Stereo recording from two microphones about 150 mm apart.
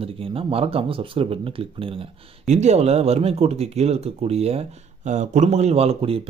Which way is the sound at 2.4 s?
50° right (ahead or behind).